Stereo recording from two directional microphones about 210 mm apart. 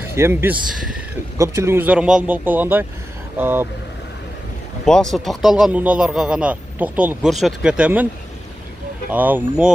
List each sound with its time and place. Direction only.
0.1 s a man's voice: 10° right (ahead or behind)
4.8 s speech: centre (ahead or behind)
9.1 s a man's voice: 10° right (ahead or behind)